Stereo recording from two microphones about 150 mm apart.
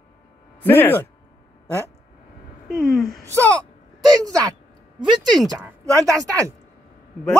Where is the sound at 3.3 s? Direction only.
20° right (ahead or behind).